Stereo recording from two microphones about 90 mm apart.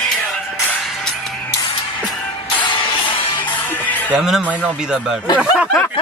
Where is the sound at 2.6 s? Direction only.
65° left (ahead or behind).